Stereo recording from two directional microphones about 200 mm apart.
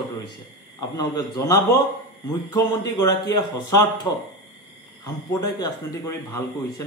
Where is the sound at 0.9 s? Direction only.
20° left (ahead or behind).